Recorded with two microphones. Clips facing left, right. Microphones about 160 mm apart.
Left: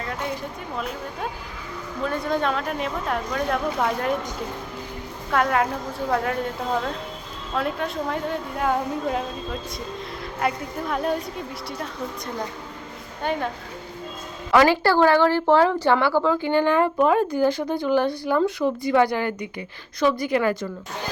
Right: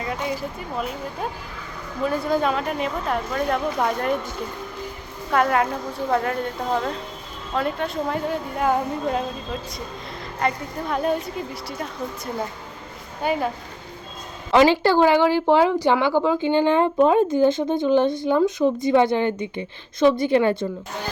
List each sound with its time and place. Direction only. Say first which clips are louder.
0.0 s speech: right 2 dB; 5° right (ahead or behind)
5.3 s speech: right 2 dB; centre (ahead or behind)
14.5 s a woman's voice: right 2 dB; 20° right (ahead or behind)